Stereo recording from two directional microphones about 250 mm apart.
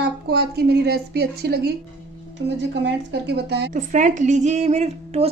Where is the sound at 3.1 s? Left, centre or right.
Right.